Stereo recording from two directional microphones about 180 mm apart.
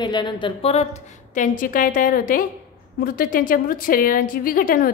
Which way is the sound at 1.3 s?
45° left (ahead or behind).